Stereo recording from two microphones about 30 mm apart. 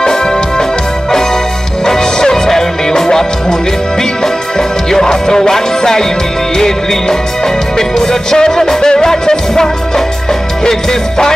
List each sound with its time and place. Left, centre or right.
0.1 s music: left
1.9 s music: left